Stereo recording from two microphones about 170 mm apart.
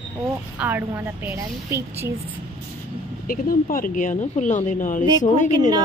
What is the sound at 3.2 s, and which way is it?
Speech, 55° left (ahead or behind).